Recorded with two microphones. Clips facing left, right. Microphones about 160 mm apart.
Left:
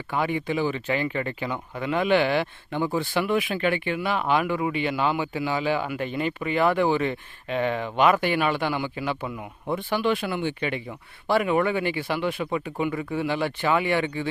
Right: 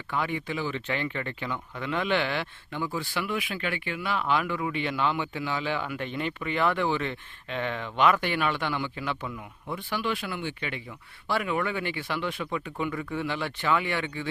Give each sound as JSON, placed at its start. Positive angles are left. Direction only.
{"t": 0.2, "sound": "speech", "side_deg": 15}
{"t": 2.7, "sound": "speech", "side_deg": 55}
{"t": 3.5, "sound": "speech", "side_deg": 25}
{"t": 9.6, "sound": "speech", "side_deg": 55}
{"t": 10.2, "sound": "speech", "side_deg": 20}